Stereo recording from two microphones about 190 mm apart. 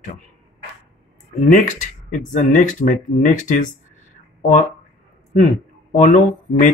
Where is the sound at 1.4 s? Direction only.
40° left (ahead or behind).